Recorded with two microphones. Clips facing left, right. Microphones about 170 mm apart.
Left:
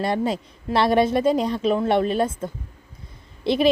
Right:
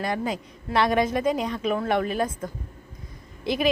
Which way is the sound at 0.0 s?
30° left (ahead or behind).